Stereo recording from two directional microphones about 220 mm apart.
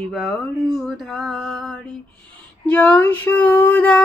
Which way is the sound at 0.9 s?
5° left (ahead or behind).